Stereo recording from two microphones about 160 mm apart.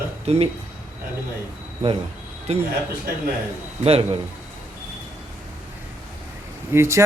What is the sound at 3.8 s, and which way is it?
Speech, 40° right (ahead or behind).